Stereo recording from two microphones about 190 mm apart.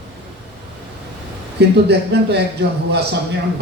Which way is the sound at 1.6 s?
60° right (ahead or behind).